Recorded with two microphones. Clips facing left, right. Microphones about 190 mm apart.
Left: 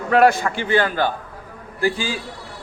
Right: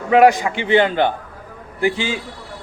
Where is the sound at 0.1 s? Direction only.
15° right (ahead or behind).